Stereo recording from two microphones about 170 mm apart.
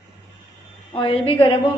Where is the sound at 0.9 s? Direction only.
30° left (ahead or behind).